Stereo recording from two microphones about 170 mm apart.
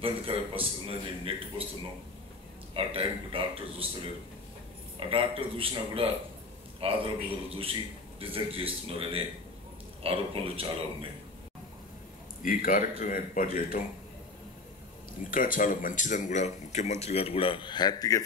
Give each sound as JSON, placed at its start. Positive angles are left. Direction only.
{"t": 0.0, "sound": "a man's voice", "side_deg": -35}
{"t": 2.7, "sound": "a man's voice", "side_deg": -35}
{"t": 4.9, "sound": "a man's voice", "side_deg": -30}
{"t": 12.4, "sound": "speech", "side_deg": 55}
{"t": 15.3, "sound": "speech", "side_deg": 55}